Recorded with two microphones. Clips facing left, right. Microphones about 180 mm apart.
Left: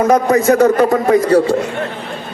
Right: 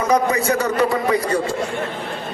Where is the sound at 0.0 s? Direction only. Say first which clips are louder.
Left 6 dB; 45° left (ahead or behind).